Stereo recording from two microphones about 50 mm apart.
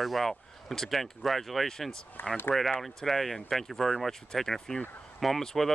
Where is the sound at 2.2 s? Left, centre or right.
Left.